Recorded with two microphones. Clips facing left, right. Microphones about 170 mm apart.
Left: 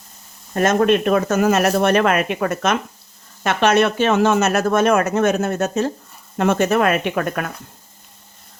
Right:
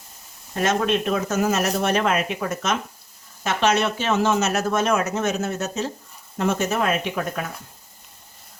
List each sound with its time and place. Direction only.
0.5 s speech: 50° left (ahead or behind)
6.3 s speech: 65° left (ahead or behind)